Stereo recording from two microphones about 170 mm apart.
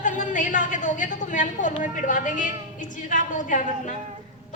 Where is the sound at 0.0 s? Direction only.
50° left (ahead or behind).